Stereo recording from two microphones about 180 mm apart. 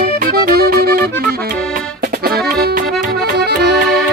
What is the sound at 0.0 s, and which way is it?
Music, 60° right (ahead or behind).